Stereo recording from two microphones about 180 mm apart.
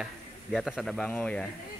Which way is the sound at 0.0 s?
Centre (ahead or behind).